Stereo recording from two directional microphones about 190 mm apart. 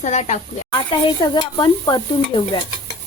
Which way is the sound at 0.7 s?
25° left (ahead or behind).